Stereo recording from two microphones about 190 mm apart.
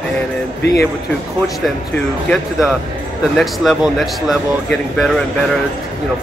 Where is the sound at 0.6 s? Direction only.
60° left (ahead or behind).